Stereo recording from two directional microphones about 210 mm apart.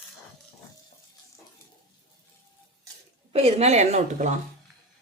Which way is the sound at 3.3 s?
30° right (ahead or behind).